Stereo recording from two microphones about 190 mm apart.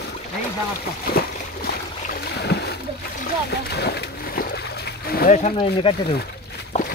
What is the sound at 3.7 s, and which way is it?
Splash, 60° left (ahead or behind).